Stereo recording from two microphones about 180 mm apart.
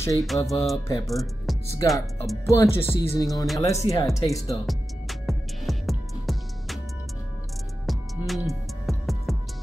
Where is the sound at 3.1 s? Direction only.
20° left (ahead or behind).